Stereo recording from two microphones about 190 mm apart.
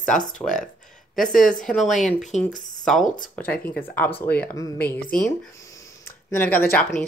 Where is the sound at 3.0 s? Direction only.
45° left (ahead or behind).